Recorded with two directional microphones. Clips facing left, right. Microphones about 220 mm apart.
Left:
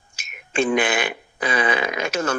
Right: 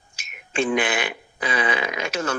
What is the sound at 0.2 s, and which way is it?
Speech, 45° left (ahead or behind).